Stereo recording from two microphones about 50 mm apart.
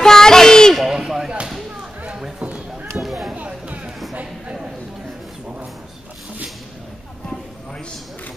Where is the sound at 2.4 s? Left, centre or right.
Right.